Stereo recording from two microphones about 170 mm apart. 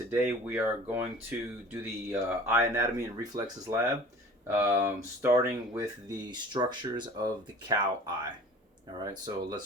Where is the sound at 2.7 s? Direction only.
20° right (ahead or behind).